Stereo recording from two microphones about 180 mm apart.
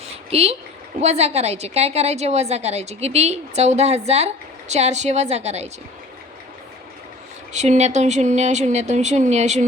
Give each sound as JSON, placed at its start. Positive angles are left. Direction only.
{"t": 0.3, "sound": "a woman's voice", "side_deg": -35}
{"t": 7.5, "sound": "a woman's voice", "side_deg": -40}